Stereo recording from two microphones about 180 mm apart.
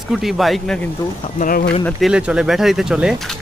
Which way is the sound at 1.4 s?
55° left (ahead or behind).